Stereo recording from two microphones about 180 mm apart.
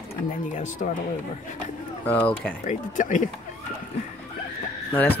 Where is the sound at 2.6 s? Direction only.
45° left (ahead or behind).